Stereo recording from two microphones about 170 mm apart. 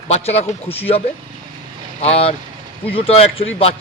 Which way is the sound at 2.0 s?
35° left (ahead or behind).